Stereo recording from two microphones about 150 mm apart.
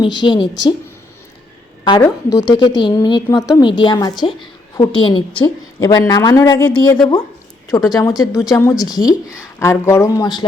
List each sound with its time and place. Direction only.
0.0 s a woman's voice: 30° left (ahead or behind)
2.0 s a woman's voice: 25° left (ahead or behind)